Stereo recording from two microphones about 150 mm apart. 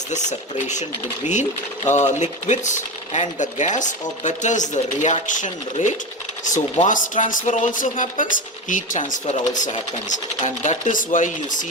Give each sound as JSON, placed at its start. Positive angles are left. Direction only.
{"t": 0.1, "sound": "speech", "side_deg": 55}